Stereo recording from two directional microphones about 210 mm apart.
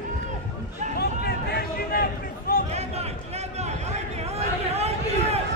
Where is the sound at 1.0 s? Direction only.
50° left (ahead or behind).